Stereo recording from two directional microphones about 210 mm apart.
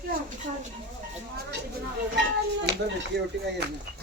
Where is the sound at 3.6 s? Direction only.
50° right (ahead or behind).